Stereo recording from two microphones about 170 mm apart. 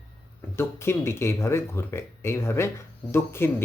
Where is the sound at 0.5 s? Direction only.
15° left (ahead or behind).